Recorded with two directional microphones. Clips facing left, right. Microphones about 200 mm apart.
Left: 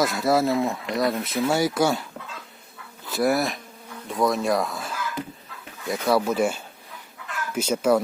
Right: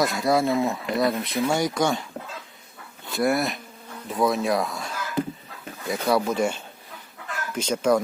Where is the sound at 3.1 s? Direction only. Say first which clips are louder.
Left 1 dB; centre (ahead or behind).